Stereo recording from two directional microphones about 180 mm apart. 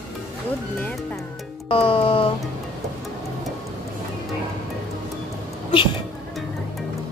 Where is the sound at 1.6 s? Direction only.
30° left (ahead or behind).